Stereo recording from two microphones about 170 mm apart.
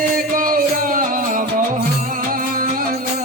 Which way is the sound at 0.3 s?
55° right (ahead or behind).